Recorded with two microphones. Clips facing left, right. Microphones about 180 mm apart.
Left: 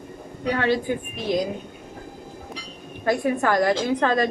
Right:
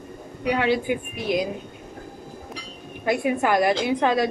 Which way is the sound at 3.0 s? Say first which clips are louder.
Even; 15° right (ahead or behind).